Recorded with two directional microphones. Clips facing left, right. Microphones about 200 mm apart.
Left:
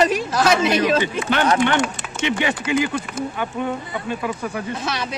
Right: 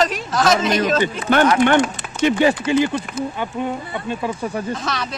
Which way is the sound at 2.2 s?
40° right (ahead or behind).